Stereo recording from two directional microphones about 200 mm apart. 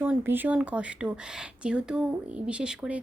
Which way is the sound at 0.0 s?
10° right (ahead or behind).